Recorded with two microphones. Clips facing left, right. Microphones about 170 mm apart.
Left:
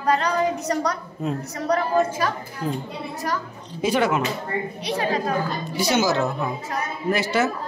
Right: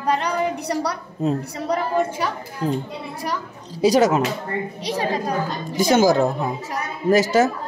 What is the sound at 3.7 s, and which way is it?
Speech, 40° right (ahead or behind).